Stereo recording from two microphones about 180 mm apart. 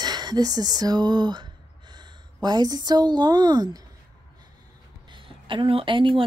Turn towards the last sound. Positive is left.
turn(degrees=-25)  # may be behind; listen again after turning